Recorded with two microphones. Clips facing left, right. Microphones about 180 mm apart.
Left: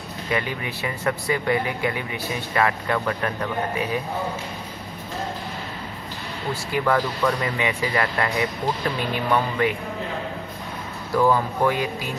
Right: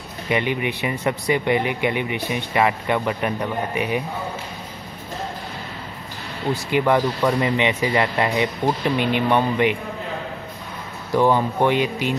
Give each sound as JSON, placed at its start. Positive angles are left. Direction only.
{"t": 0.3, "sound": "speech", "side_deg": -20}
{"t": 6.5, "sound": "speech", "side_deg": -20}
{"t": 11.1, "sound": "speech", "side_deg": -25}